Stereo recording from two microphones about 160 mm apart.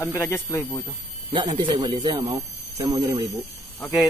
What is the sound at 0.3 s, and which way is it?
Speech, 15° left (ahead or behind).